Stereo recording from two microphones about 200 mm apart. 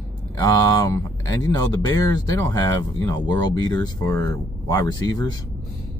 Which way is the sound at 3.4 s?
20° left (ahead or behind).